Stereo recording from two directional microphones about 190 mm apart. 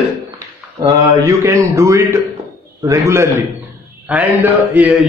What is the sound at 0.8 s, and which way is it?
Speech, 15° right (ahead or behind).